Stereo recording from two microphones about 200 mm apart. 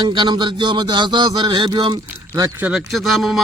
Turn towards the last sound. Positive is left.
turn(degrees=0)  # may be behind; listen again after turning